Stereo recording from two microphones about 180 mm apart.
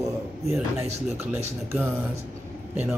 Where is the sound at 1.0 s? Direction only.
15° right (ahead or behind).